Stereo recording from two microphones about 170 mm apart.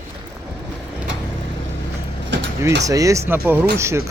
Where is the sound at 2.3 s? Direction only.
90° right.